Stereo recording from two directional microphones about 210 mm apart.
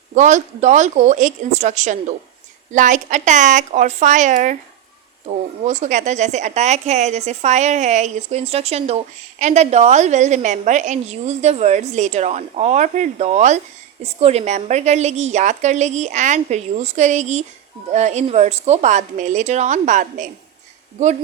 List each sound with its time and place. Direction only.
0.1 s a woman's voice: 35° right (ahead or behind)